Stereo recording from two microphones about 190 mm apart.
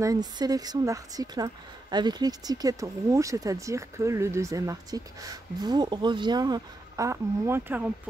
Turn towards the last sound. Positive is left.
turn(degrees=-10)  # may be behind; listen again after turning